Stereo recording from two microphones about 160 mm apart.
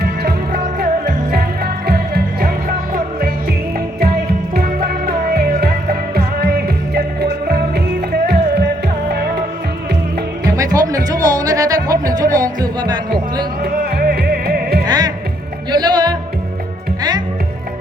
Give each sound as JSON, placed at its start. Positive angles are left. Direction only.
{"t": 0.0, "sound": "music", "side_deg": -80}
{"t": 4.5, "sound": "music", "side_deg": -70}
{"t": 6.9, "sound": "music", "side_deg": -85}
{"t": 10.4, "sound": "music", "side_deg": -20}
{"t": 13.7, "sound": "music", "side_deg": -65}
{"t": 14.8, "sound": "music", "side_deg": -25}